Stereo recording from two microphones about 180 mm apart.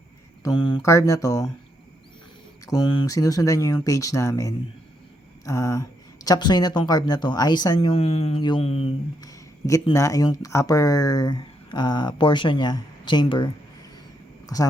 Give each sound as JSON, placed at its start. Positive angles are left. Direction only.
{"t": 0.4, "sound": "speech", "side_deg": 25}
{"t": 2.6, "sound": "speech", "side_deg": 25}
{"t": 9.2, "sound": "a sound", "side_deg": 15}
{"t": 9.9, "sound": "speech", "side_deg": 20}